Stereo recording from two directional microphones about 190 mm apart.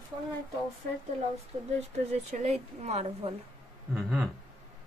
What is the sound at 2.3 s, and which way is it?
A woman's voice, 35° right (ahead or behind).